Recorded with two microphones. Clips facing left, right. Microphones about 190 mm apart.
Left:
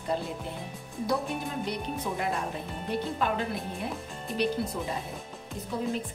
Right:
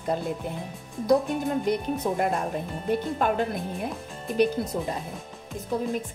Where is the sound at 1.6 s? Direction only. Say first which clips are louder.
Right 7 dB; 50° right (ahead or behind).